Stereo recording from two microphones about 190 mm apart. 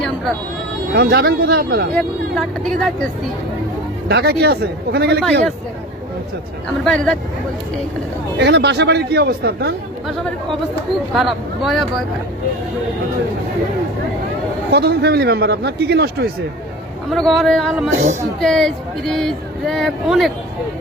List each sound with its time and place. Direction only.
0.9 s a man's voice: 60° right (ahead or behind)
2.0 s speech: 5° left (ahead or behind)
4.1 s a man's voice: 60° right (ahead or behind)
6.8 s speech: 5° left (ahead or behind)
8.4 s a man's voice: 65° right (ahead or behind)
11.1 s speech: centre (ahead or behind)
14.7 s a man's voice: 55° right (ahead or behind)
17.1 s speech: centre (ahead or behind)